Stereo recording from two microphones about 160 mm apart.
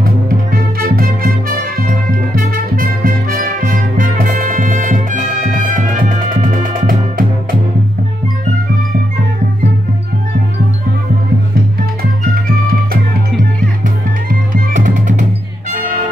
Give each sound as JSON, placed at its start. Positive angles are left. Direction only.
{"t": 0.0, "sound": "music", "side_deg": -65}
{"t": 14.7, "sound": "music", "side_deg": -50}